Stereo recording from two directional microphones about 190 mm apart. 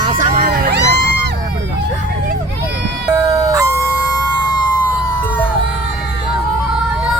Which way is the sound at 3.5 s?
15° right (ahead or behind).